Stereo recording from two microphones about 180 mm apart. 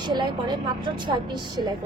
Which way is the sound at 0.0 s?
25° right (ahead or behind).